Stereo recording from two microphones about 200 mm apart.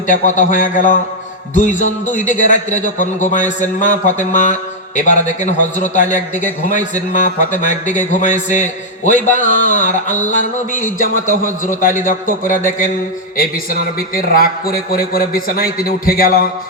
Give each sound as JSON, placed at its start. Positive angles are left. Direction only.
{"t": 0.1, "sound": "a man's voice", "side_deg": 40}